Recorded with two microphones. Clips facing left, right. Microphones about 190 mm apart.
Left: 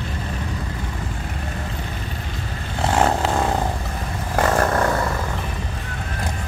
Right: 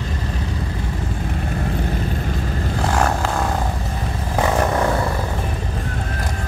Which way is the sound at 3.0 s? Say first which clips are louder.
Left 3 dB; 20° left (ahead or behind).